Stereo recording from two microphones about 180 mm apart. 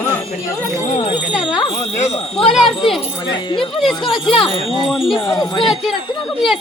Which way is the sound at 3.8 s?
Centre (ahead or behind).